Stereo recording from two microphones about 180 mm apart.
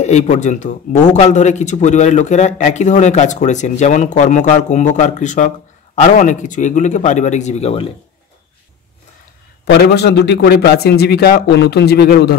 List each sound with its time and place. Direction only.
0.0 s a man's voice: 40° left (ahead or behind)
9.7 s a man's voice: 65° left (ahead or behind)